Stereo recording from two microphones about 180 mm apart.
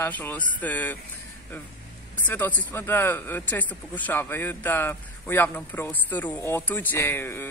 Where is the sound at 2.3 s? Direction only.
10° left (ahead or behind).